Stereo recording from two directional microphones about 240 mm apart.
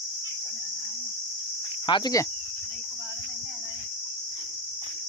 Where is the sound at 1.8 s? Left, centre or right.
Centre.